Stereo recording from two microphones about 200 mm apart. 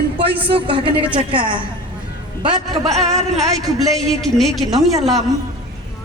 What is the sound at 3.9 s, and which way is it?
A man's voice, centre (ahead or behind).